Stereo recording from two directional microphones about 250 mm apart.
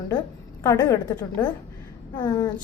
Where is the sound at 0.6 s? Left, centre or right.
Centre.